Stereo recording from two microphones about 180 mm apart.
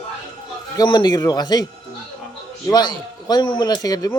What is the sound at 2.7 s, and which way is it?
Speech, 25° left (ahead or behind).